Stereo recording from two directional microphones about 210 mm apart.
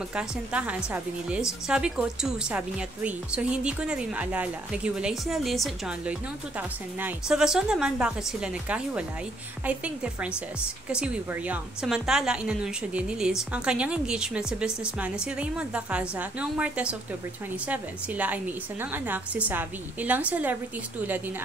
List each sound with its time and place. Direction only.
0.1 s a woman's voice: 5° right (ahead or behind)